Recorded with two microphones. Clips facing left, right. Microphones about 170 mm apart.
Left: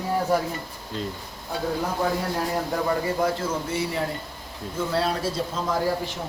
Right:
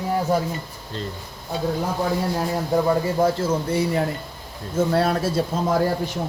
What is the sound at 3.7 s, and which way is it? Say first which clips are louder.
Speech: right 6 dB; 40° right (ahead or behind).